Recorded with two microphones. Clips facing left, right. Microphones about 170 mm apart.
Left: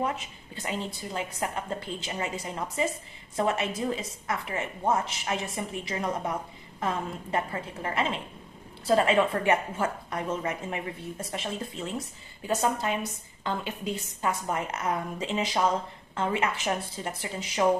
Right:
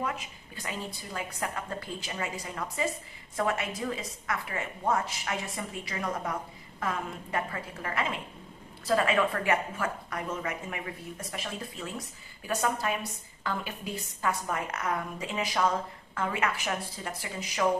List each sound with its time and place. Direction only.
0.0 s speech: 25° left (ahead or behind)